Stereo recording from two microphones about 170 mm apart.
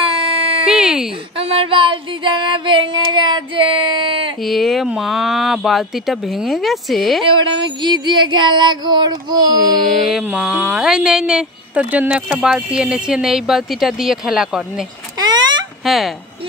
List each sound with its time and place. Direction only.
0.0 s a sound: 30° right (ahead or behind)
0.7 s a sound: 5° right (ahead or behind)
1.4 s child singing: 35° right (ahead or behind)
4.4 s speech: centre (ahead or behind)
7.3 s child singing: 30° right (ahead or behind)
10.0 s speech: 5° right (ahead or behind)
15.1 s vehicle: 25° right (ahead or behind)
15.8 s speech: centre (ahead or behind)